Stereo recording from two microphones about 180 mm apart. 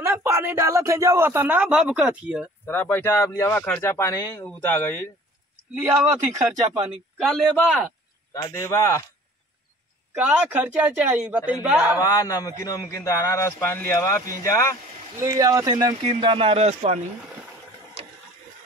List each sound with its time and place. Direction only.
0.0 s speech: 15° right (ahead or behind)
2.6 s a man's voice: 10° left (ahead or behind)
7.2 s a man's voice: centre (ahead or behind)
8.3 s a man's voice: 15° left (ahead or behind)
10.1 s speech: 10° right (ahead or behind)
12.0 s a man's voice: 20° left (ahead or behind)
15.1 s speech: 15° right (ahead or behind); by 17.0 s 35° right (ahead or behind)